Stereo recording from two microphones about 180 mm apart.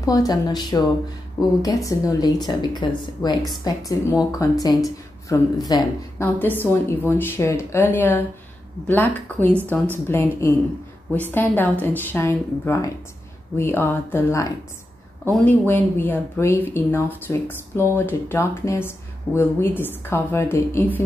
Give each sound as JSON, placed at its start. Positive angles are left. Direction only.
{"t": 0.0, "sound": "speech", "side_deg": 20}
{"t": 6.2, "sound": "a woman's voice", "side_deg": 10}